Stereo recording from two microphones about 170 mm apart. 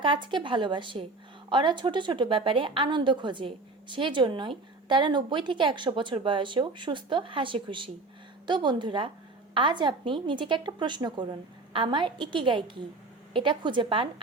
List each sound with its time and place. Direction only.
0.0 s a woman's voice: 30° right (ahead or behind)